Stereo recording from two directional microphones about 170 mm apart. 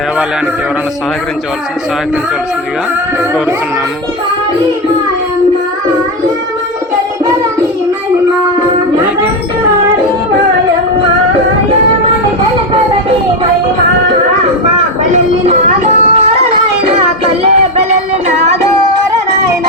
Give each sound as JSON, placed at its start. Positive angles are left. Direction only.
{"t": 15.1, "sound": "music", "side_deg": -40}
{"t": 17.4, "sound": "music", "side_deg": -40}